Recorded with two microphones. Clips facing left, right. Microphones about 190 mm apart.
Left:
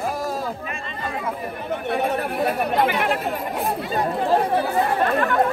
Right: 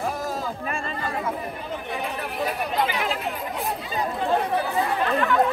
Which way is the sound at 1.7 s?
55° left (ahead or behind).